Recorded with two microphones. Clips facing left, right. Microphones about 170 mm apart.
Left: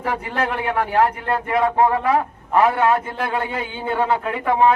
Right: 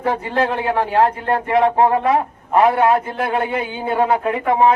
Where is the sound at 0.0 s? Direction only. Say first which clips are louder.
Right 4 dB; 30° right (ahead or behind).